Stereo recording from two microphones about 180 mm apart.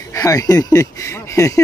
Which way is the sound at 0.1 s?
20° left (ahead or behind).